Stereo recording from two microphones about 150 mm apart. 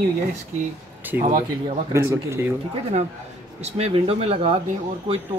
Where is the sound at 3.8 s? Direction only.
40° right (ahead or behind).